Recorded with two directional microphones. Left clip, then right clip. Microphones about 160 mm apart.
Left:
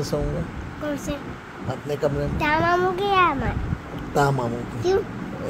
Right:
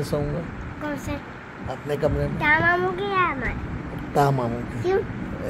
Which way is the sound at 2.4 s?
30° left (ahead or behind).